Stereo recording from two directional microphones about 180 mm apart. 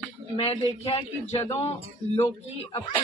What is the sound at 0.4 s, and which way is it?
A woman's voice, 30° left (ahead or behind).